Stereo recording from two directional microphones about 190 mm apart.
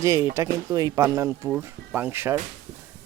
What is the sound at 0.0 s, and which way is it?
Speech, 15° right (ahead or behind).